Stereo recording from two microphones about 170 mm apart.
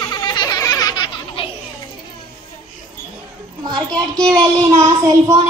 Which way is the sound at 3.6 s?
25° right (ahead or behind).